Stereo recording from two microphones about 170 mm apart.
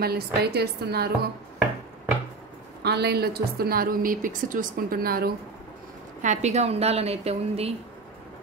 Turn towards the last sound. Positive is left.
turn(degrees=-35)  # may be behind; listen again after turning